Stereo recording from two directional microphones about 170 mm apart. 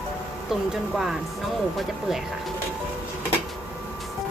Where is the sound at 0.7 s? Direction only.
Centre (ahead or behind).